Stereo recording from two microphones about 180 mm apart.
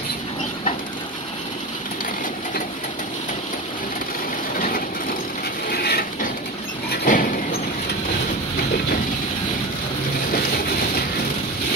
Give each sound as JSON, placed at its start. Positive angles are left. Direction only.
{"t": 4.6, "sound": "train", "side_deg": 50}
{"t": 5.7, "sound": "wood", "side_deg": 55}
{"t": 6.9, "sound": "a sound", "side_deg": 50}
{"t": 10.3, "sound": "train", "side_deg": 55}